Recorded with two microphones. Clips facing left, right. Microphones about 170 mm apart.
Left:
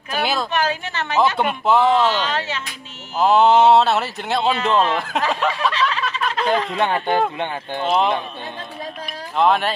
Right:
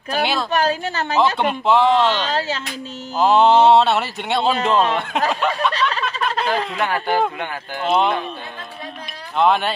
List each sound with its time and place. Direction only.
0.2 s speech: centre (ahead or behind)
0.5 s a woman's voice: 35° right (ahead or behind)
1.4 s speech: 5° left (ahead or behind)
2.2 s a woman's voice: 35° right (ahead or behind)
3.2 s speech: centre (ahead or behind)
5.7 s snicker: 40° right (ahead or behind)
6.4 s speech: centre (ahead or behind)
6.8 s speech: 25° left (ahead or behind)
7.8 s speech: centre (ahead or behind)
9.4 s speech: centre (ahead or behind)